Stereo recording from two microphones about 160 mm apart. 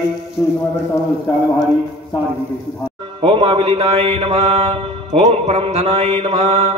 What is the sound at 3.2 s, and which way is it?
Mantra, 35° right (ahead or behind).